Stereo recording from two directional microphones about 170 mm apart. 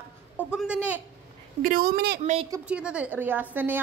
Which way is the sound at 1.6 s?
55° right (ahead or behind).